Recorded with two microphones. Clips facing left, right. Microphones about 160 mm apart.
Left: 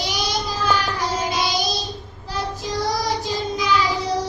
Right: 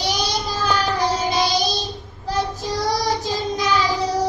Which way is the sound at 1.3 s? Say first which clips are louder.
Right 3 dB; 40° right (ahead or behind).